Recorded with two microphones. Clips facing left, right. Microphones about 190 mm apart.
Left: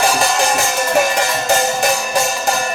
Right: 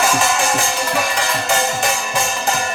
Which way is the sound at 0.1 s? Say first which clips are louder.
Left 2 dB; 35° left (ahead or behind).